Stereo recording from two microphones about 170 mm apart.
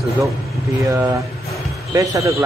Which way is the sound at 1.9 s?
20° right (ahead or behind).